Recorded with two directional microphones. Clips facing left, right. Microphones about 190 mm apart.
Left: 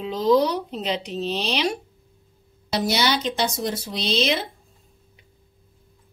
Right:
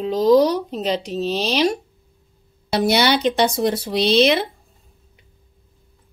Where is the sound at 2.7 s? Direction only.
60° right (ahead or behind).